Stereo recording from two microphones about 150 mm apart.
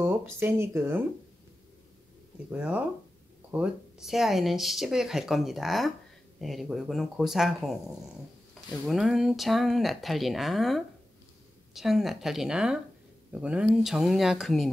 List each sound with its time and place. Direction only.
0.0 s speech: 15° right (ahead or behind)
2.5 s speech: 10° right (ahead or behind)